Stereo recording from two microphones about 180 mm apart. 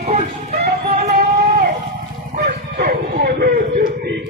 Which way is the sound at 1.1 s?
55° right (ahead or behind).